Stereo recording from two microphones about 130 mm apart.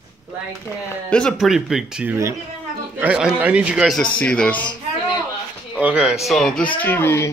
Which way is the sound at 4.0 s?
5° left (ahead or behind).